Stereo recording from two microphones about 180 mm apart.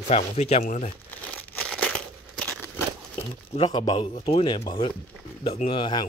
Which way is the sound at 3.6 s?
25° left (ahead or behind).